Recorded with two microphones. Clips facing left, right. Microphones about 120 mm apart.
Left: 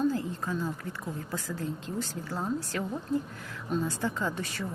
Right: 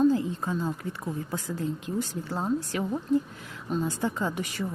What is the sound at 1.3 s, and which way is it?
A woman's voice, 15° right (ahead or behind).